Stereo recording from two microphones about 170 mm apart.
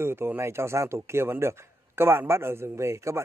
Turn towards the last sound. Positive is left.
turn(degrees=-15)  # may be behind; listen again after turning